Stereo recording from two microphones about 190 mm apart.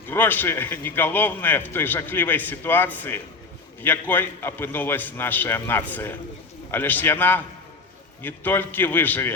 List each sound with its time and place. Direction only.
0.1 s a man's voice: 10° left (ahead or behind)